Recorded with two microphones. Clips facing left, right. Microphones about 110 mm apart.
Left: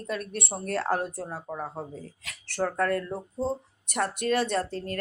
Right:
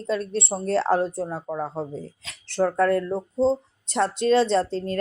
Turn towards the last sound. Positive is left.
turn(degrees=-25)  # may be behind; listen again after turning